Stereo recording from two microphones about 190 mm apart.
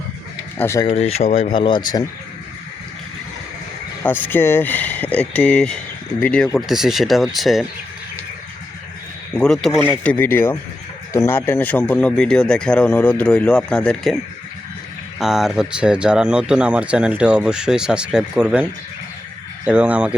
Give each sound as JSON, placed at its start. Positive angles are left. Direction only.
{"t": 0.6, "sound": "speech", "side_deg": 15}
{"t": 0.9, "sound": "speech", "side_deg": 30}
{"t": 4.0, "sound": "speech", "side_deg": 10}
{"t": 9.3, "sound": "speech", "side_deg": 5}
{"t": 15.2, "sound": "speech", "side_deg": 0}